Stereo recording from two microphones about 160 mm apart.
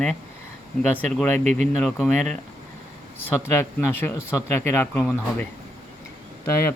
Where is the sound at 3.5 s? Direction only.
15° left (ahead or behind).